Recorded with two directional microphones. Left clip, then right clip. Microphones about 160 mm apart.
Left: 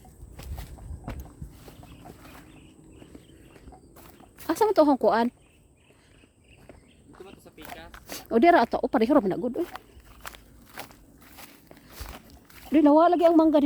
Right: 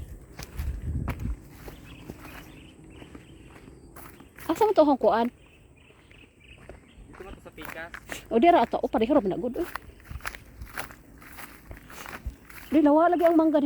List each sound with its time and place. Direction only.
1.1 s walk: 5° right (ahead or behind)
3.9 s walk: 5° right (ahead or behind)
4.4 s speech: 25° left (ahead or behind)
7.1 s a sound: 10° right (ahead or behind)
8.3 s speech: 35° left (ahead or behind)
10.2 s walk: 5° right (ahead or behind)
12.7 s speech: 40° left (ahead or behind)